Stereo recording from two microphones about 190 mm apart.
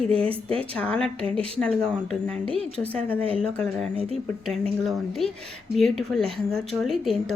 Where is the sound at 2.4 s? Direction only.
30° right (ahead or behind).